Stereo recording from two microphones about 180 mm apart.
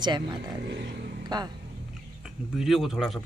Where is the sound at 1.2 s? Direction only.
20° right (ahead or behind).